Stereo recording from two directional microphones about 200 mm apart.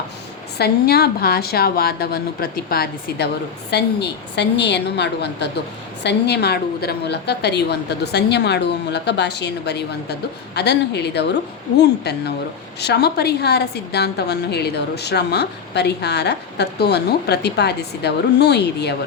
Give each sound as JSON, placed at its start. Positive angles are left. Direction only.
{"t": 0.6, "sound": "a woman's voice", "side_deg": 50}